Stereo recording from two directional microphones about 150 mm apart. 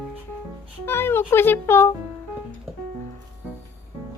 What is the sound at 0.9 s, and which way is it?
Speech, 15° left (ahead or behind).